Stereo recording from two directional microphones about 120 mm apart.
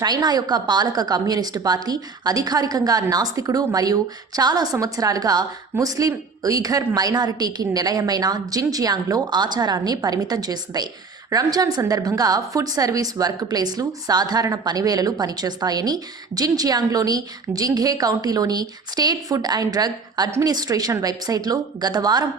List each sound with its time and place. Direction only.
0.0 s a woman's voice: 35° right (ahead or behind)